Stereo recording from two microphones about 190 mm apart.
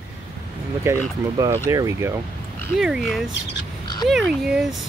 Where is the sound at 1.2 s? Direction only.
15° right (ahead or behind).